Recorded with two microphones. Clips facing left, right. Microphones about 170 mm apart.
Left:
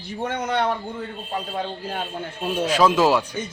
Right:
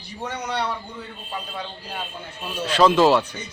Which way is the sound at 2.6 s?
10° left (ahead or behind).